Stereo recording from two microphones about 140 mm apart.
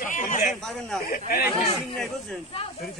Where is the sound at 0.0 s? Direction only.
70° left (ahead or behind).